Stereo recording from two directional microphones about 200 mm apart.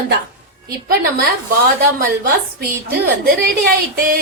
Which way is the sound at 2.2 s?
50° right (ahead or behind).